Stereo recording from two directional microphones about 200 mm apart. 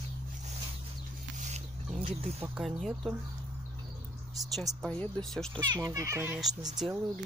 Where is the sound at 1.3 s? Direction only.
35° right (ahead or behind).